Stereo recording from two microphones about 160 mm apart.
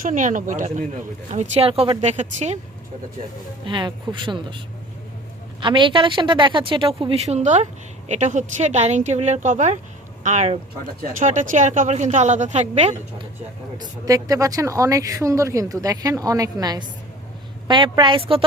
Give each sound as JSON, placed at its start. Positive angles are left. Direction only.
{"t": 0.0, "sound": "a woman's voice", "side_deg": -50}
{"t": 1.3, "sound": "a woman's voice", "side_deg": -40}
{"t": 3.7, "sound": "speech", "side_deg": -30}
{"t": 5.5, "sound": "a woman's voice", "side_deg": -30}
{"t": 13.7, "sound": "a woman's voice", "side_deg": -25}